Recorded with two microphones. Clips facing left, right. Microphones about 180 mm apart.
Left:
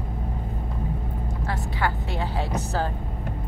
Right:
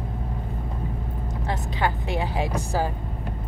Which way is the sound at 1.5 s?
20° right (ahead or behind).